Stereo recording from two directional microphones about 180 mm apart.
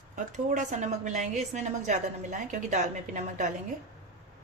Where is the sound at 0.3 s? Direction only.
45° right (ahead or behind).